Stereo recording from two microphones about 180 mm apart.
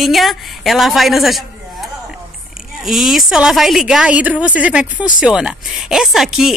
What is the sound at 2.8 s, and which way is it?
A woman's voice, centre (ahead or behind).